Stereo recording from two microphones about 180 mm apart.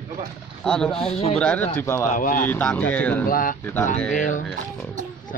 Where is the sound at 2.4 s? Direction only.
10° left (ahead or behind).